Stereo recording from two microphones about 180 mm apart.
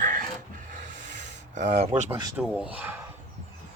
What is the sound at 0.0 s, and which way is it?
Pant, 50° right (ahead or behind).